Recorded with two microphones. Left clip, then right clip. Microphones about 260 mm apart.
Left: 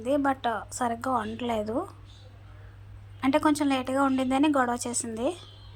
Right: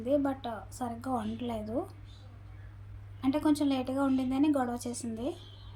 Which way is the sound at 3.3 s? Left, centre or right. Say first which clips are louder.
Left 5 dB; centre.